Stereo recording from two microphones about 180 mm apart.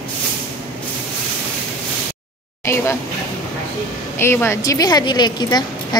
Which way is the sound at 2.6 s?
15° left (ahead or behind).